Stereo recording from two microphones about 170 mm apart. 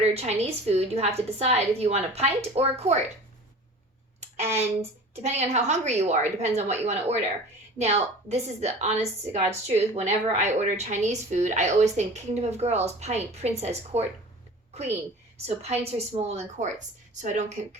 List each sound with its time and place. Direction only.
0.1 s a woman's voice: 40° right (ahead or behind)
5.1 s a woman's voice: 40° right (ahead or behind)
15.4 s a woman's voice: 40° right (ahead or behind)